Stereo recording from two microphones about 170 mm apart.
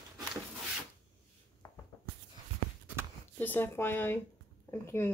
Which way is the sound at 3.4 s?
10° left (ahead or behind).